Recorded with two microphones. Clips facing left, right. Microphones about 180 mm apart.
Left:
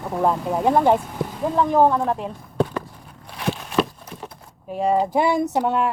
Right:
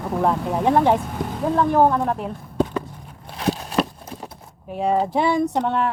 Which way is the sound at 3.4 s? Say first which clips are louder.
Right 1 dB; 35° right (ahead or behind).